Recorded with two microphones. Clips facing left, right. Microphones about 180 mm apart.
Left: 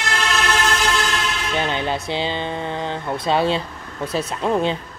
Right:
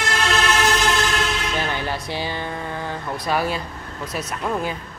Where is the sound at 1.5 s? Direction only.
20° left (ahead or behind).